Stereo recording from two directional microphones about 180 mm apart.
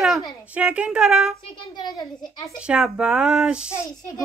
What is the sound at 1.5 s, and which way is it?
Speech, 25° left (ahead or behind).